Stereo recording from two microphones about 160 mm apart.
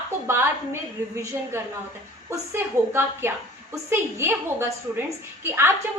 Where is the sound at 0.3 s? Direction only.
15° right (ahead or behind).